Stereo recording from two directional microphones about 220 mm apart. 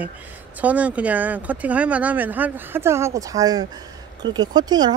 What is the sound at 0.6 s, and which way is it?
Speech, 5° right (ahead or behind).